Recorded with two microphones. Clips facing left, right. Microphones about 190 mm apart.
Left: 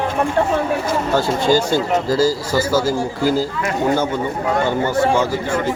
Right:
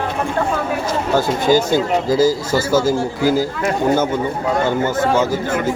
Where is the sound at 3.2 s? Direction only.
15° right (ahead or behind).